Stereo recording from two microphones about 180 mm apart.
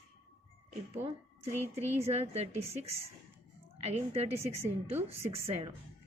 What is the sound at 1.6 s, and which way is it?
A woman's voice, 35° right (ahead or behind).